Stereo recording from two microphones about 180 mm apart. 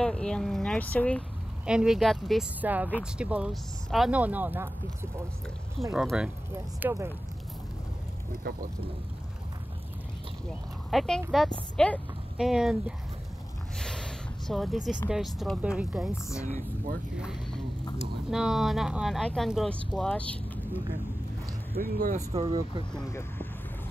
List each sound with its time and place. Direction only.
0.0 s speech: 5° left (ahead or behind)
1.7 s speech: 5° right (ahead or behind)
5.9 s speech: 5° right (ahead or behind)
6.5 s speech: 15° right (ahead or behind)
8.3 s speech: 50° right (ahead or behind)
10.9 s speech: centre (ahead or behind)
13.7 s a sound: 5° left (ahead or behind)
15.0 s speech: centre (ahead or behind)
16.4 s speech: 45° right (ahead or behind)
17.1 s speech: 5° right (ahead or behind)
21.7 s speech: 55° right (ahead or behind)
22.3 s speech: 30° right (ahead or behind)
23.0 s speech: 15° left (ahead or behind)